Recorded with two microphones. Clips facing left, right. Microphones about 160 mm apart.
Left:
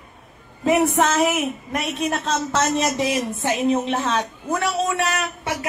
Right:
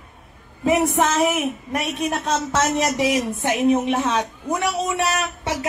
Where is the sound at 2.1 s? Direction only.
10° right (ahead or behind).